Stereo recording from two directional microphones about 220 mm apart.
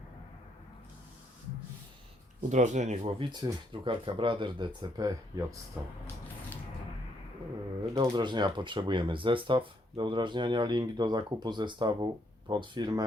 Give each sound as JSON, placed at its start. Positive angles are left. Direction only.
{"t": 2.5, "sound": "speech", "side_deg": -35}
{"t": 7.9, "sound": "speech", "side_deg": -20}